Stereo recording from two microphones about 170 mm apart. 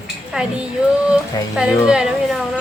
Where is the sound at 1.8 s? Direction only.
5° right (ahead or behind).